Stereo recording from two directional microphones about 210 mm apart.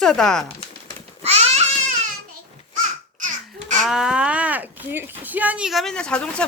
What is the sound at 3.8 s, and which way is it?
Speech, 5° right (ahead or behind).